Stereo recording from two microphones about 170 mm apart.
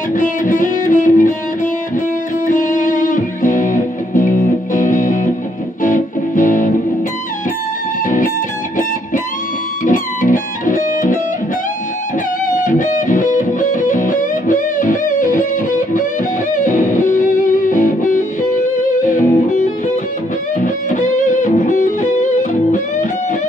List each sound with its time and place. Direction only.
0.1 s music: 50° left (ahead or behind)
2.4 s music: 50° left (ahead or behind)
9.8 s music: 50° left (ahead or behind)
12.5 s music: 50° left (ahead or behind)
16.5 s music: 50° left (ahead or behind)